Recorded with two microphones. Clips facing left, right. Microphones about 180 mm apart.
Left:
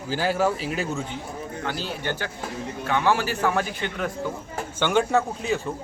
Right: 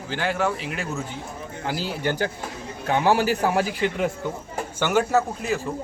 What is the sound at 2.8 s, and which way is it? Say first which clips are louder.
A man's voice: right 3 dB; 40° right (ahead or behind).